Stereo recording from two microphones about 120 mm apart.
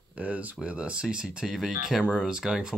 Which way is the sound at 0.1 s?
10° right (ahead or behind).